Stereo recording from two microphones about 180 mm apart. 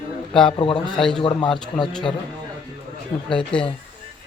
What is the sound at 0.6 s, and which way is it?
Speech, 30° left (ahead or behind).